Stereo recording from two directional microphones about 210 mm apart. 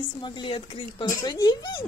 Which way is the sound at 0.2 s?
20° left (ahead or behind).